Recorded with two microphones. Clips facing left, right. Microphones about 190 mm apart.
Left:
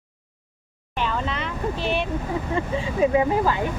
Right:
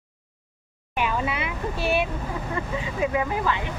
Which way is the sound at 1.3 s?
10° right (ahead or behind).